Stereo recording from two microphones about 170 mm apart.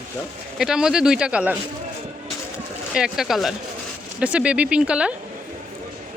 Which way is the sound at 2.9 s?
5° right (ahead or behind).